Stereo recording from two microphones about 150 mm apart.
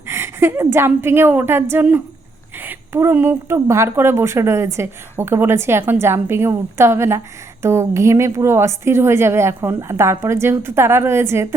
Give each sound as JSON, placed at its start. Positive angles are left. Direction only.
{"t": 0.1, "sound": "a woman's voice", "side_deg": -15}